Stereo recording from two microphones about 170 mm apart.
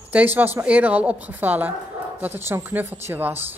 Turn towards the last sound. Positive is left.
turn(degrees=-10)  # may be behind; listen again after turning